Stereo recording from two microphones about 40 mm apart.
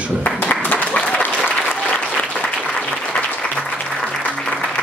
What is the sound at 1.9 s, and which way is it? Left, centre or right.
Applause, left.